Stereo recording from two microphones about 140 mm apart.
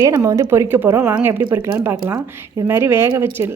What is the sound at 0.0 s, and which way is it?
A woman's voice, 25° right (ahead or behind).